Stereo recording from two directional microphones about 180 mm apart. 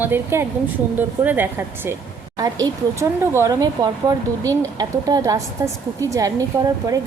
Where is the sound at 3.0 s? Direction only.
15° right (ahead or behind).